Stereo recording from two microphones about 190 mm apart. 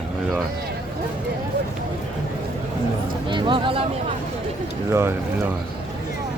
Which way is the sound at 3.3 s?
25° right (ahead or behind).